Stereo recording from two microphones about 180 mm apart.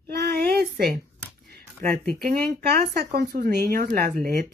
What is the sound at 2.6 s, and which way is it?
Speech, 60° right (ahead or behind).